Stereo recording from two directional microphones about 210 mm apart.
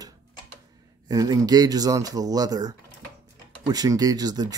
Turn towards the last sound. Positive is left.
turn(degrees=-20)  # may be behind; listen again after turning